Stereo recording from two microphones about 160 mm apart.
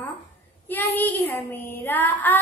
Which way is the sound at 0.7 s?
10° left (ahead or behind).